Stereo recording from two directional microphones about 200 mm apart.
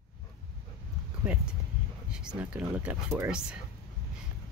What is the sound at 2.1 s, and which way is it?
Speech, 5° right (ahead or behind).